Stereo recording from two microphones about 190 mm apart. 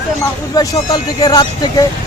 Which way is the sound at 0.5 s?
20° left (ahead or behind).